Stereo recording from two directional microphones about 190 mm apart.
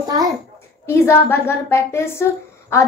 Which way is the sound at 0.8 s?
15° left (ahead or behind).